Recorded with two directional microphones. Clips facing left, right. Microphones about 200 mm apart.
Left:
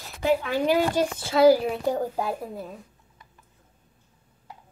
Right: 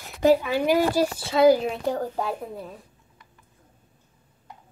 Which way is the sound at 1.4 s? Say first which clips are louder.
Even; 10° left (ahead or behind).